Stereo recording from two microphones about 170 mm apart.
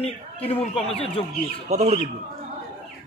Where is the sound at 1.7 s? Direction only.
40° right (ahead or behind).